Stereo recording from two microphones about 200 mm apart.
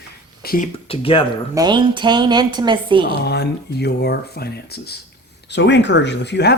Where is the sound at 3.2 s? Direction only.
55° left (ahead or behind).